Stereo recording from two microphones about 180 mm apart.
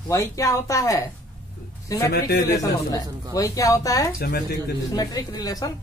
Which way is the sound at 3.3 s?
20° left (ahead or behind).